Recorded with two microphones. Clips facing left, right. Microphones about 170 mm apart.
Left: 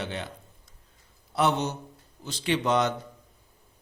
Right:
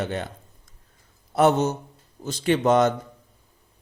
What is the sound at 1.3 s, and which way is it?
A man's voice, 45° right (ahead or behind).